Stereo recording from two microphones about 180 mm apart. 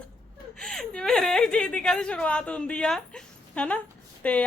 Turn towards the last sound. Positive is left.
turn(degrees=5)  # may be behind; listen again after turning